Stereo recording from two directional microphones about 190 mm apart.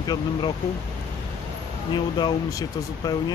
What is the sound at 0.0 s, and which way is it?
Speech, 20° left (ahead or behind).